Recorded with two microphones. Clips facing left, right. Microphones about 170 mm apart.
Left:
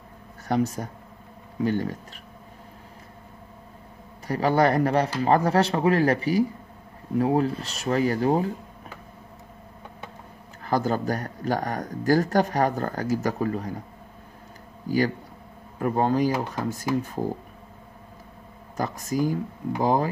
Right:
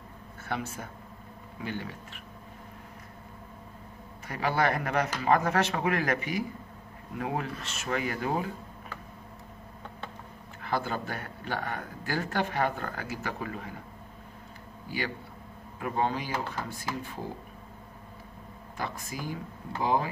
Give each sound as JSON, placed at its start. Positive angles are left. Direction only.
{"t": 0.5, "sound": "speech", "side_deg": 40}
{"t": 4.3, "sound": "speech", "side_deg": 35}
{"t": 10.6, "sound": "speech", "side_deg": 40}
{"t": 14.9, "sound": "speech", "side_deg": 40}
{"t": 16.9, "sound": "speech", "side_deg": 15}
{"t": 18.8, "sound": "speech", "side_deg": 40}